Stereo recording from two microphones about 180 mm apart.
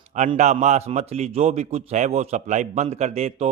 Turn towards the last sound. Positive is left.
turn(degrees=-35)  # may be behind; listen again after turning